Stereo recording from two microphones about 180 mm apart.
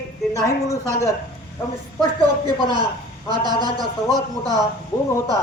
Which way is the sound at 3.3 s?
25° right (ahead or behind).